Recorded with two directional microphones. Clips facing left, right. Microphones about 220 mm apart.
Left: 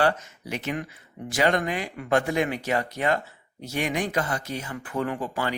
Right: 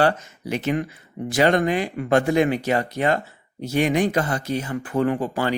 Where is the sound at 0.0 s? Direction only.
30° right (ahead or behind).